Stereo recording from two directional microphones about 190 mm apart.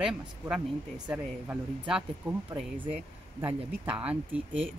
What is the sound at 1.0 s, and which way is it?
Speech, 5° right (ahead or behind).